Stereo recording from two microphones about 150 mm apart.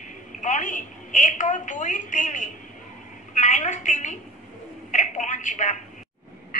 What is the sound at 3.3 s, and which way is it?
Speech, 55° left (ahead or behind).